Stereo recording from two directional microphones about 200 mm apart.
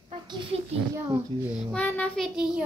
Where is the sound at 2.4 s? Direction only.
5° right (ahead or behind).